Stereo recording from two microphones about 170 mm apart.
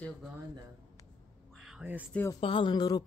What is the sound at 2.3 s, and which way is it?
Speech, 30° left (ahead or behind).